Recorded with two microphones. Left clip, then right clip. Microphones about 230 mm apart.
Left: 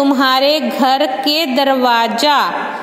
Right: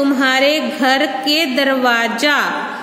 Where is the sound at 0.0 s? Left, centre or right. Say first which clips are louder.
Left 2 dB; left.